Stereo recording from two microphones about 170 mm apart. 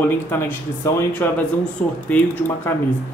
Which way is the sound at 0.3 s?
15° left (ahead or behind).